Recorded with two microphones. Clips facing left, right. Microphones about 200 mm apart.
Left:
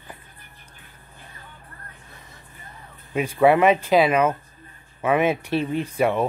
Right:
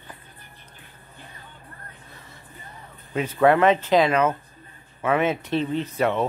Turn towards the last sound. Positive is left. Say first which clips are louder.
# left 2 dB
turn(degrees=10)  # may be behind; listen again after turning